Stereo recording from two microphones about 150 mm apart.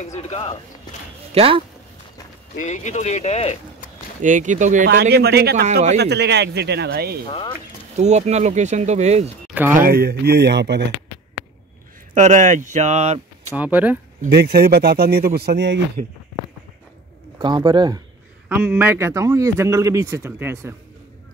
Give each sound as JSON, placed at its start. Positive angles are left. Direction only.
{"t": 0.0, "sound": "speech", "side_deg": 50}
{"t": 1.3, "sound": "speech", "side_deg": -40}
{"t": 2.6, "sound": "speech", "side_deg": 50}
{"t": 4.2, "sound": "speech", "side_deg": -55}
{"t": 4.8, "sound": "speech", "side_deg": -90}
{"t": 7.2, "sound": "speech", "side_deg": 35}
{"t": 8.0, "sound": "speech", "side_deg": -50}
{"t": 9.5, "sound": "a sound", "side_deg": -10}
{"t": 9.8, "sound": "speech", "side_deg": -90}
{"t": 12.1, "sound": "speech", "side_deg": -50}
{"t": 13.6, "sound": "speech", "side_deg": -10}
{"t": 14.3, "sound": "speech", "side_deg": -90}
{"t": 17.4, "sound": "a man's voice", "side_deg": -30}
{"t": 18.5, "sound": "a man's voice", "side_deg": -10}